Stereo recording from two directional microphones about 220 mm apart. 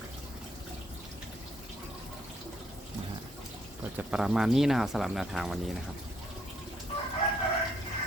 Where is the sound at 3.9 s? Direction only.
5° right (ahead or behind).